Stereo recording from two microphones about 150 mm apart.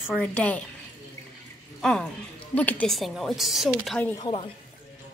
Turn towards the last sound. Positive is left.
turn(degrees=35)  # may be behind; listen again after turning